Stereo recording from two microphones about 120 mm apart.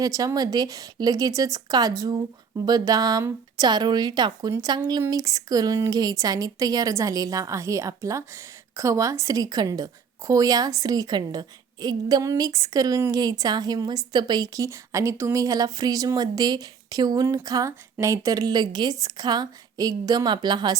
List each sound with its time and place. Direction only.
0.0 s a woman's voice: 30° right (ahead or behind)